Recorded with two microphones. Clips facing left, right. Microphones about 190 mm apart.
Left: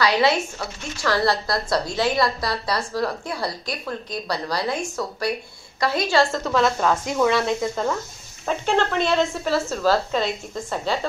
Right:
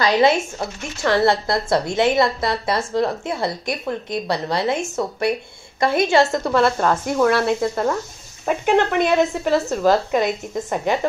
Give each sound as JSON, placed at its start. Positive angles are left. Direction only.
{"t": 0.3, "sound": "speech", "side_deg": -25}
{"t": 6.5, "sound": "speech", "side_deg": -5}